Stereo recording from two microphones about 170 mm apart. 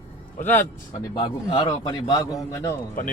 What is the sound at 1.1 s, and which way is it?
A man's voice, 30° left (ahead or behind).